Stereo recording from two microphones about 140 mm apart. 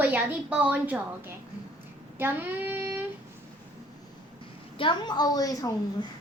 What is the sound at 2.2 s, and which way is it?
Speech, 15° right (ahead or behind).